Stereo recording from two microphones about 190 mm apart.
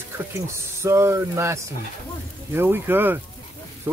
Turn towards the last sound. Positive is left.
turn(degrees=-10)  # may be behind; listen again after turning